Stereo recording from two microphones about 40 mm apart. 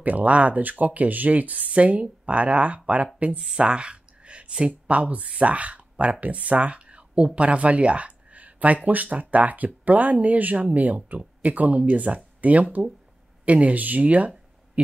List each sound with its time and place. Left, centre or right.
0.0 s speech: right
3.5 s speech: right